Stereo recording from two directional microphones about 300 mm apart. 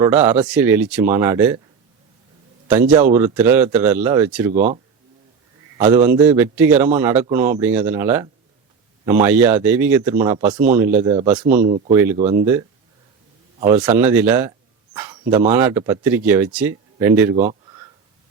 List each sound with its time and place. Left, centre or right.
0.0 s speech: centre
2.6 s speech: centre
4.5 s speech: right
5.7 s speech: centre
11.6 s speech: right
13.7 s speech: centre
14.9 s a sound: centre
15.3 s speech: centre